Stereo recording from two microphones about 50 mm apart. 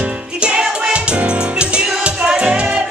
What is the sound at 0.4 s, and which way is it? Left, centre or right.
Music, centre.